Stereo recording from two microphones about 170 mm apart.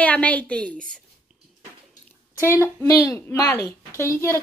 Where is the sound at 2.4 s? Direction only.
15° left (ahead or behind).